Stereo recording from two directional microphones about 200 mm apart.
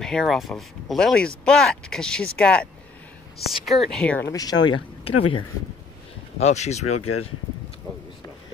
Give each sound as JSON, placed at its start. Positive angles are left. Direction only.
{"t": 0.0, "sound": "speech", "side_deg": 0}
{"t": 6.4, "sound": "speech", "side_deg": 35}
{"t": 7.0, "sound": "speech", "side_deg": 90}